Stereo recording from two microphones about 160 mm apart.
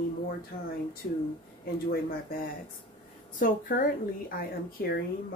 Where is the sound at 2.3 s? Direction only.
65° left (ahead or behind).